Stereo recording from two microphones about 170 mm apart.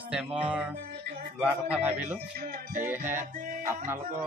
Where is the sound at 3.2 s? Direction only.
55° right (ahead or behind).